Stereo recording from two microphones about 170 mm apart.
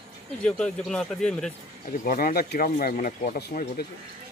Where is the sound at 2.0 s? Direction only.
55° left (ahead or behind).